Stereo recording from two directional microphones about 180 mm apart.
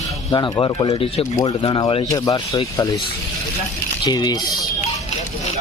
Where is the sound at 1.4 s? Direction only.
20° left (ahead or behind).